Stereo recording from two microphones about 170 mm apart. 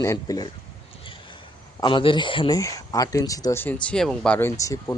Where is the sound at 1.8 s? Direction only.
30° left (ahead or behind).